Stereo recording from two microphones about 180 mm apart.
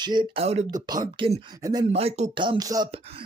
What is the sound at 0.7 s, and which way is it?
Speech, 20° right (ahead or behind).